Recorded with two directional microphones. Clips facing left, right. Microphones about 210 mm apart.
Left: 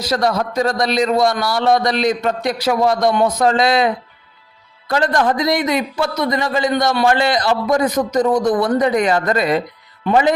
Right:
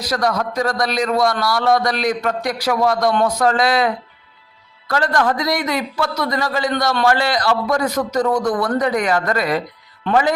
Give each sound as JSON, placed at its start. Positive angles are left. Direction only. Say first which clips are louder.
{"t": 0.0, "sound": "a man's voice", "louder": "left 2 dB", "side_deg": 25}